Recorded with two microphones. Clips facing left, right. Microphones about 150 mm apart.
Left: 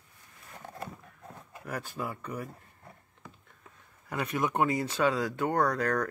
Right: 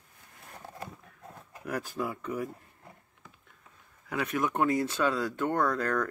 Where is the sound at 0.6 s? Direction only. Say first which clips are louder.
Left 2 dB; 10° right (ahead or behind).